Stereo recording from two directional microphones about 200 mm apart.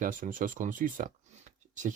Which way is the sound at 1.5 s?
40° right (ahead or behind).